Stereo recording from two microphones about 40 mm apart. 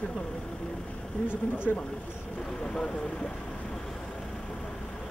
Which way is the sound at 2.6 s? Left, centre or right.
Centre.